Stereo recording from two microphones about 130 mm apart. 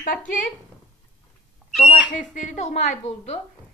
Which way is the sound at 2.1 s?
70° left (ahead or behind).